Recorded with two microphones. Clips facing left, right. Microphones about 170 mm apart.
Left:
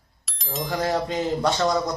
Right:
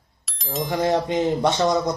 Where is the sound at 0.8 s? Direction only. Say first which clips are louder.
Right 4 dB; 20° right (ahead or behind).